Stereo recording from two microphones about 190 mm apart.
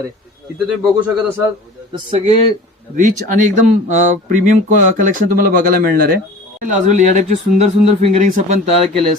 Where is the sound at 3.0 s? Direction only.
40° right (ahead or behind).